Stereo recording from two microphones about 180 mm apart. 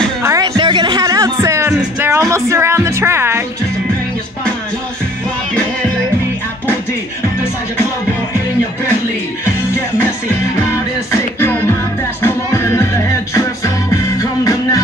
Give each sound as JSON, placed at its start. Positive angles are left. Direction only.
{"t": 0.2, "sound": "music", "side_deg": -20}
{"t": 11.1, "sound": "music", "side_deg": 15}